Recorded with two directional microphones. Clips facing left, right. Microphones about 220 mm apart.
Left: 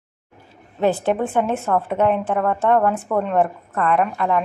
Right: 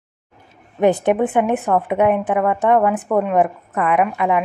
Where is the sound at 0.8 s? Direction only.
15° right (ahead or behind).